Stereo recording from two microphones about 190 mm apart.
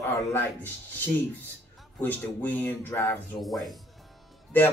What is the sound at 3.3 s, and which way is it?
Speech, centre (ahead or behind).